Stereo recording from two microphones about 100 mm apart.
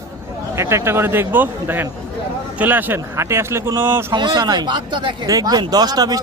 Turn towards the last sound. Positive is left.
turn(degrees=-40)  # may be behind; listen again after turning